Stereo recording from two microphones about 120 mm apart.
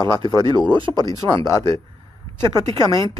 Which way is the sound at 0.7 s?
40° right (ahead or behind).